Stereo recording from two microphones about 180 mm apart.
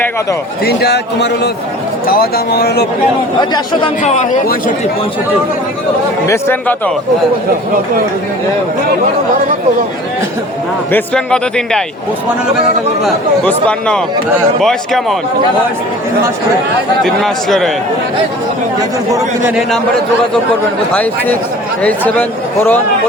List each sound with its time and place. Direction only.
0.6 s a man's voice: 65° left (ahead or behind)
3.5 s speech: 25° left (ahead or behind)
6.2 s speech: 15° left (ahead or behind)
10.9 s speech: 5° left (ahead or behind)
13.4 s speech: 5° left (ahead or behind)
17.0 s speech: centre (ahead or behind)
19.1 s a man's voice: 10° right (ahead or behind)
21.8 s speech: 10° left (ahead or behind)